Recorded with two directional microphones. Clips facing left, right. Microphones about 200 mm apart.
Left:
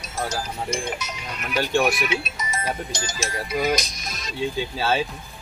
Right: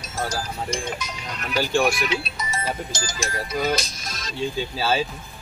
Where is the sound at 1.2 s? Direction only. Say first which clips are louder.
Right 1 dB; 5° left (ahead or behind).